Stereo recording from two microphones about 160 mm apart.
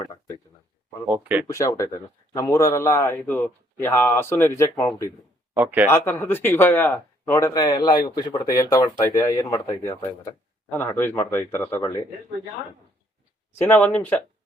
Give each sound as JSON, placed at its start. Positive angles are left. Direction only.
{"t": 1.0, "sound": "speech", "side_deg": -10}
{"t": 1.5, "sound": "speech", "side_deg": 20}
{"t": 5.5, "sound": "speech", "side_deg": -10}
{"t": 5.9, "sound": "speech", "side_deg": 15}
{"t": 13.6, "sound": "speech", "side_deg": 10}